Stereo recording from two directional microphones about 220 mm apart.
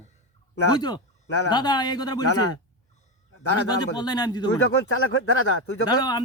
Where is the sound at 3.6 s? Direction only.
20° left (ahead or behind).